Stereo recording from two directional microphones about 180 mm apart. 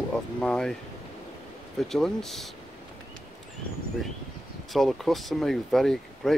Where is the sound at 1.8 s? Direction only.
Centre (ahead or behind).